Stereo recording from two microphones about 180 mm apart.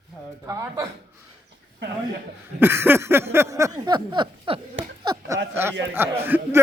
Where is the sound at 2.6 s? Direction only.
10° right (ahead or behind); by 4.6 s 30° right (ahead or behind).